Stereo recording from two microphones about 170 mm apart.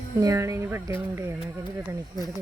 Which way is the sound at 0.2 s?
20° right (ahead or behind).